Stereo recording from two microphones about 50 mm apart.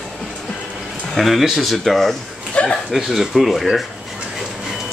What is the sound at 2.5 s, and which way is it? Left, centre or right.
Speech, left.